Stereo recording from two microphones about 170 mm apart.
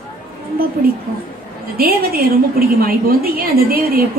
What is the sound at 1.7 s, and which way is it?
A woman's voice, 60° right (ahead or behind).